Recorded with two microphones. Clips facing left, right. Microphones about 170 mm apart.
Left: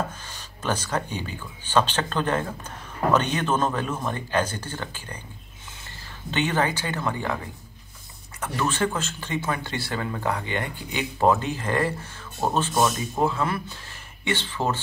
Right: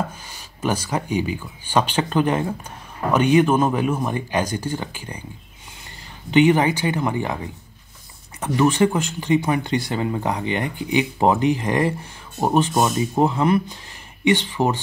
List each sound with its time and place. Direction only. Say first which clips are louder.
0.3 s speech: right 4 dB; 10° right (ahead or behind)
6.3 s speech: right 9 dB; 15° right (ahead or behind)
8.4 s speech: right 8 dB; 15° right (ahead or behind)